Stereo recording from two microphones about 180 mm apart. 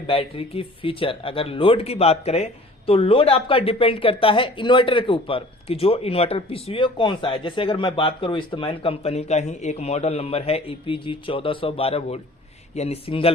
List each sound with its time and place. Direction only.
0.1 s speech: 30° left (ahead or behind)